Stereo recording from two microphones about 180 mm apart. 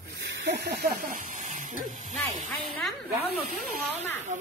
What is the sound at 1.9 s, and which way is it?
Speech, 45° right (ahead or behind).